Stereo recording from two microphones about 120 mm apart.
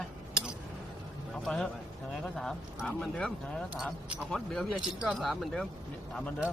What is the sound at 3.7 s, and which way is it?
Speech, 10° right (ahead or behind).